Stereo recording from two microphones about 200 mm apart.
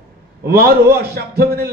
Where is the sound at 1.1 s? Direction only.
50° right (ahead or behind).